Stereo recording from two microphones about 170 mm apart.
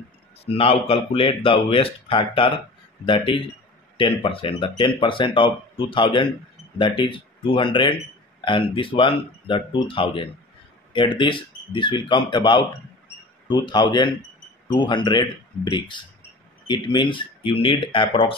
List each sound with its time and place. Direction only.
0.6 s speech: 35° left (ahead or behind)